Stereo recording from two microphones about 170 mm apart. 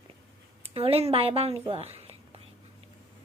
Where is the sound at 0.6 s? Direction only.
35° right (ahead or behind).